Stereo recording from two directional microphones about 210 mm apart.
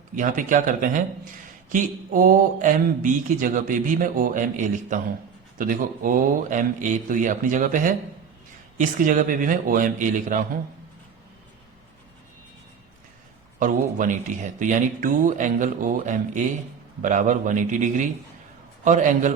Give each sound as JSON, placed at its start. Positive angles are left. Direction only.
{"t": 0.2, "sound": "speech", "side_deg": -40}
{"t": 13.6, "sound": "speech", "side_deg": -40}